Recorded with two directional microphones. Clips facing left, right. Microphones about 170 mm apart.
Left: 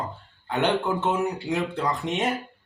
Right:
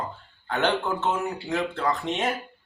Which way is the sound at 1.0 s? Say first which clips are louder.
Left 2 dB; 15° left (ahead or behind).